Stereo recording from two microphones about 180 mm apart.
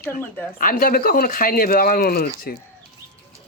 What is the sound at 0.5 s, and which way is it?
Speech, 50° left (ahead or behind).